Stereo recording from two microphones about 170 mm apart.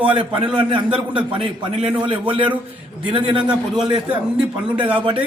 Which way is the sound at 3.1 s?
30° right (ahead or behind).